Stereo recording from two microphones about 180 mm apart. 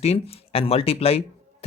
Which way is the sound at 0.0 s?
35° left (ahead or behind).